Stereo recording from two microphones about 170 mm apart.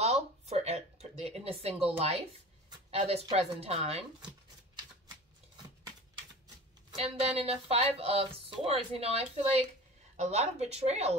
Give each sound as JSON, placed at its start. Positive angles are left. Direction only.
{"t": 0.0, "sound": "a sound", "side_deg": -40}
{"t": 2.9, "sound": "speech", "side_deg": -35}
{"t": 7.0, "sound": "speech", "side_deg": -35}
{"t": 10.1, "sound": "speech", "side_deg": -40}